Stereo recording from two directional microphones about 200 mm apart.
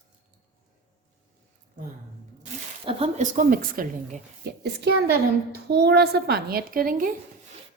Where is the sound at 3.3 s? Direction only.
45° right (ahead or behind).